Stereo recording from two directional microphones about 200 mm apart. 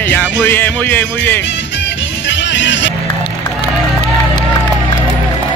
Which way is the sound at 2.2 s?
65° left (ahead or behind).